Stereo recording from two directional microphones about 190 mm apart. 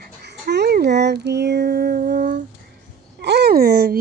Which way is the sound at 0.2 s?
60° right (ahead or behind).